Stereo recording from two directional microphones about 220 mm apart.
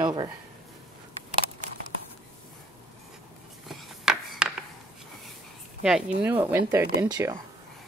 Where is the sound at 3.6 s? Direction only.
Centre (ahead or behind).